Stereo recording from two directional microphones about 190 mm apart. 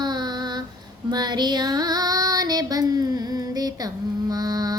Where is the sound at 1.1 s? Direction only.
20° right (ahead or behind).